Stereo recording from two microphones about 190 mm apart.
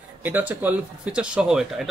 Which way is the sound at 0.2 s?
10° right (ahead or behind).